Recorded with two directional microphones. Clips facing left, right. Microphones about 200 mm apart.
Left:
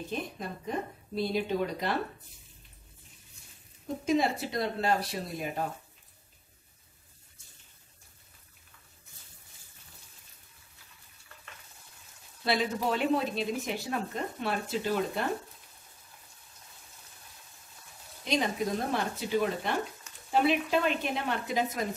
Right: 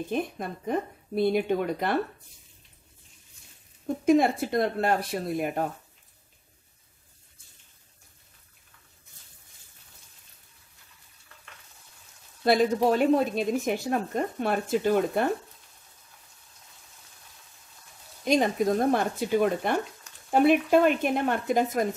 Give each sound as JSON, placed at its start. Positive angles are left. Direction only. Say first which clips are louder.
{"t": 0.1, "sound": "a woman's voice", "louder": "right 6 dB", "side_deg": -55}
{"t": 3.8, "sound": "a woman's voice", "louder": "right 6 dB", "side_deg": -55}
{"t": 12.4, "sound": "a woman's voice", "louder": "right 8 dB", "side_deg": -45}
{"t": 18.2, "sound": "a woman's voice", "louder": "right 6 dB", "side_deg": -50}